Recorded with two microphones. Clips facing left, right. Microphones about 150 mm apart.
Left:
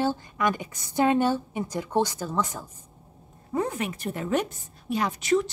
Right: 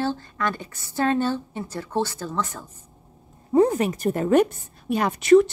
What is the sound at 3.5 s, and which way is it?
A woman's voice, 35° right (ahead or behind).